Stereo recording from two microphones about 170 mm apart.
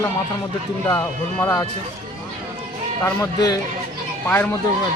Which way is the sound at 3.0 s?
15° left (ahead or behind).